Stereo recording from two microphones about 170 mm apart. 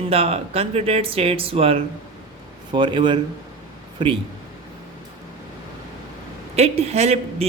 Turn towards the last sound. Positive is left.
turn(degrees=-40)  # may be behind; listen again after turning